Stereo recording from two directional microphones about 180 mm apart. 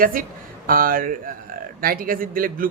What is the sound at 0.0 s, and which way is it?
A man's voice, 50° right (ahead or behind).